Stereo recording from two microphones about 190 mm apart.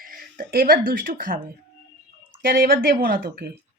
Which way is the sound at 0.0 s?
45° right (ahead or behind).